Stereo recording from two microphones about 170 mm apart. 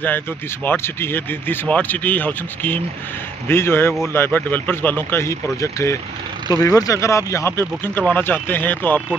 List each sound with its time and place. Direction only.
0.7 s speech: 15° left (ahead or behind)